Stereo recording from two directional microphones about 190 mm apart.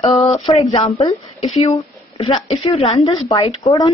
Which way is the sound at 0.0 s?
35° left (ahead or behind).